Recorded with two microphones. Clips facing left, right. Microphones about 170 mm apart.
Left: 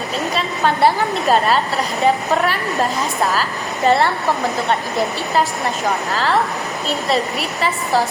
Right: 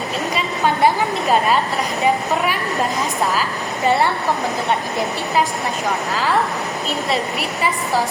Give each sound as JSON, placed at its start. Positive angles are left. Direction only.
{"t": 3.8, "sound": "speech", "side_deg": -15}